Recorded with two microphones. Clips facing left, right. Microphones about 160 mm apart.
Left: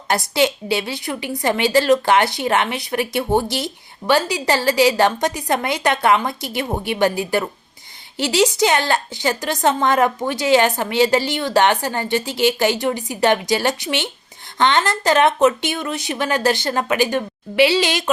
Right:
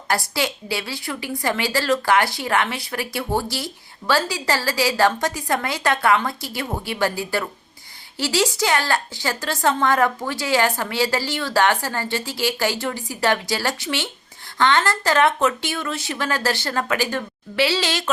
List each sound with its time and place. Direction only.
0.1 s a woman's voice: 20° left (ahead or behind)